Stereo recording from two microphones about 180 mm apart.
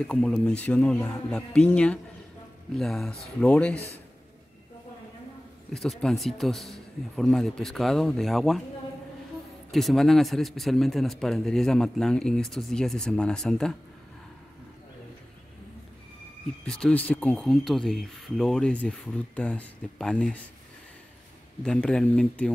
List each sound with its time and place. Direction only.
0.0 s speech: 5° left (ahead or behind)
5.7 s speech: 5° left (ahead or behind)
9.7 s speech: centre (ahead or behind)
16.6 s speech: 5° left (ahead or behind)
21.6 s speech: 5° left (ahead or behind)